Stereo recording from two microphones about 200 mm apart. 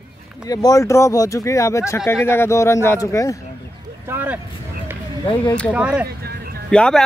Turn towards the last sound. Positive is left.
turn(degrees=5)  # may be behind; listen again after turning